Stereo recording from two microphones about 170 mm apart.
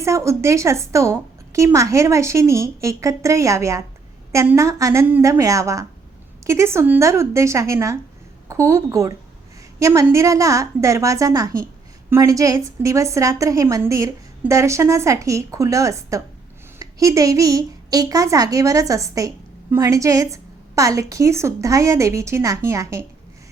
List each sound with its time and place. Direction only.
0.0 s a woman's voice: 15° right (ahead or behind)